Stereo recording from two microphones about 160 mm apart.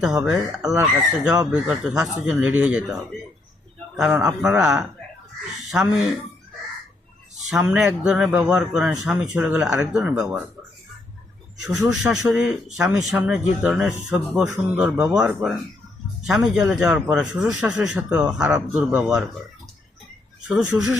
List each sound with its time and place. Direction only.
0.0 s speech: 5° right (ahead or behind)
4.1 s speech: 15° right (ahead or behind)
4.4 s speech: 5° right (ahead or behind)
7.5 s speech: 5° right (ahead or behind)
11.9 s speech: 5° right (ahead or behind)
20.7 s speech: 5° right (ahead or behind)